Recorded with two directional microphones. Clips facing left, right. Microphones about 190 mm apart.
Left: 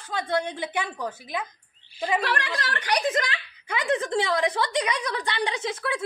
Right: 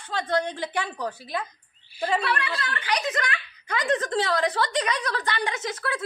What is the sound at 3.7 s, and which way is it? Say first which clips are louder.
A woman's voice: even; 15° left (ahead or behind).